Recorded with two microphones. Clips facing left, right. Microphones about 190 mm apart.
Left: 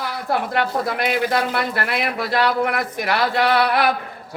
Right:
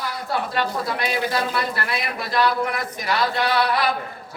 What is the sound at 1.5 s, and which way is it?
Speech, 65° left (ahead or behind).